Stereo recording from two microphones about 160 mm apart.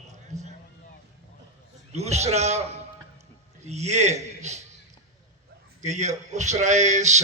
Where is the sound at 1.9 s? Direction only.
45° right (ahead or behind).